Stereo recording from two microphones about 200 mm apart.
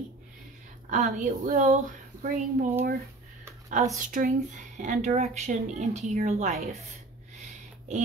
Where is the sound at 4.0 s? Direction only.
40° right (ahead or behind).